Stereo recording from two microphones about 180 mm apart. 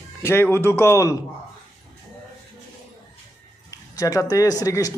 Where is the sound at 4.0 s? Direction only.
20° left (ahead or behind).